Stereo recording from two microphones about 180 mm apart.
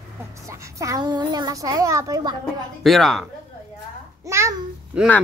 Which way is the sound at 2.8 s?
Centre (ahead or behind).